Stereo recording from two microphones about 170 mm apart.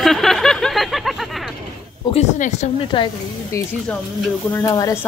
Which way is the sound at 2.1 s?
40° left (ahead or behind).